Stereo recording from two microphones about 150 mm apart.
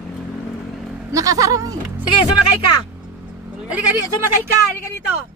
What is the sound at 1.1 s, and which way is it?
Speech, 20° right (ahead or behind).